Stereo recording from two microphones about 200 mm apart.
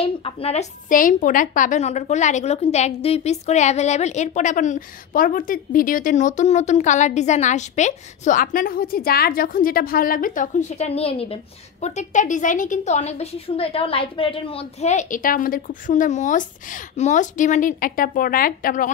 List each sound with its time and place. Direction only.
0.0 s a woman's voice: 30° left (ahead or behind); by 18.9 s 45° left (ahead or behind)